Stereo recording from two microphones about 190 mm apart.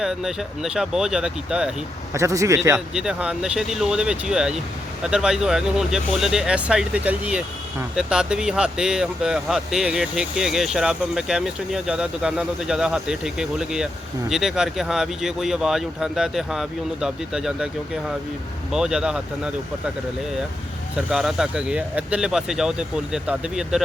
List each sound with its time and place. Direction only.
0.0 s speech: centre (ahead or behind)
2.1 s a man's voice: 15° right (ahead or behind)
2.7 s speech: 5° right (ahead or behind)
21.1 s speech: centre (ahead or behind)